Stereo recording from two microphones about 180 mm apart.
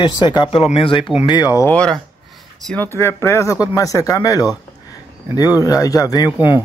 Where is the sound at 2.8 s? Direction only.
15° left (ahead or behind).